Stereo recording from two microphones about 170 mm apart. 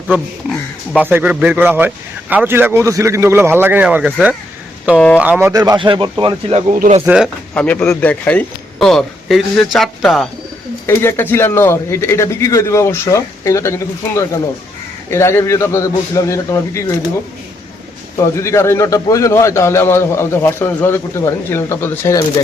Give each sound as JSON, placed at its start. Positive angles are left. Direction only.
{"t": 0.9, "sound": "a man's voice", "side_deg": -10}
{"t": 4.9, "sound": "speech", "side_deg": 5}
{"t": 5.2, "sound": "speech", "side_deg": -10}
{"t": 7.0, "sound": "a man's voice", "side_deg": -5}
{"t": 7.5, "sound": "speech", "side_deg": 5}
{"t": 10.8, "sound": "speech", "side_deg": 15}
{"t": 18.2, "sound": "speech", "side_deg": 15}